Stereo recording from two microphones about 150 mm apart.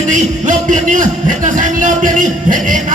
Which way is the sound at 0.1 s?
60° right (ahead or behind).